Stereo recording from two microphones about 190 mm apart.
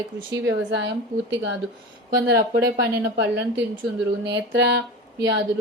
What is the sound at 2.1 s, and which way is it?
A woman's voice, 55° right (ahead or behind).